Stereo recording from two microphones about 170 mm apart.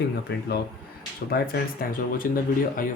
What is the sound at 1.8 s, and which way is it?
Speech, 55° left (ahead or behind).